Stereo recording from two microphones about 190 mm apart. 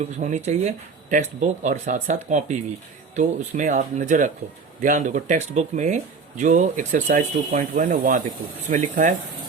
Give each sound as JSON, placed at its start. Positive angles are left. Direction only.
{"t": 0.2, "sound": "speech", "side_deg": -40}